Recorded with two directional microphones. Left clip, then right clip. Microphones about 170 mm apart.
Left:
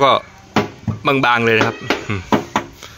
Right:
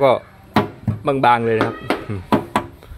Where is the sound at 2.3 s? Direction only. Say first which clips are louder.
Left 1 dB; 25° right (ahead or behind).